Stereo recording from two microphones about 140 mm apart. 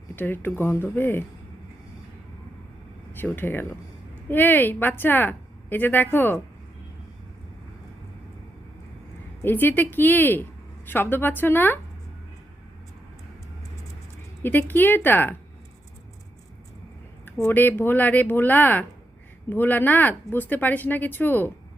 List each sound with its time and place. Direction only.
0.2 s speech: 15° left (ahead or behind)
3.1 s speech: 15° left (ahead or behind)
9.4 s speech: 15° left (ahead or behind)
14.4 s speech: 15° left (ahead or behind)
17.2 s speech: 15° left (ahead or behind)